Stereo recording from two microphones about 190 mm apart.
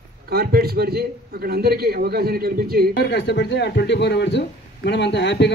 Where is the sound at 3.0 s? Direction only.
65° left (ahead or behind).